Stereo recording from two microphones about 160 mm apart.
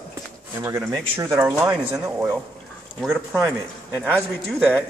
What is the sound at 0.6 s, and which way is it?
Speech, 15° right (ahead or behind).